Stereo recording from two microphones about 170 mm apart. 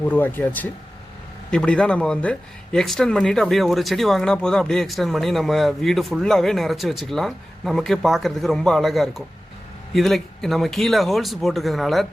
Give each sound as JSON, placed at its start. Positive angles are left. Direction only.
{"t": 0.0, "sound": "speech", "side_deg": 10}